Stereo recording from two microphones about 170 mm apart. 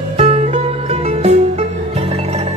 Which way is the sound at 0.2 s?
35° right (ahead or behind).